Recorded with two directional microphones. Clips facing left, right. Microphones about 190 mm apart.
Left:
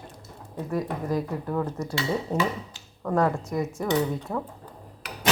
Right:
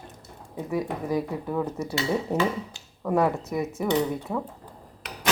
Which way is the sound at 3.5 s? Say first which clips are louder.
Right 1 dB; centre (ahead or behind).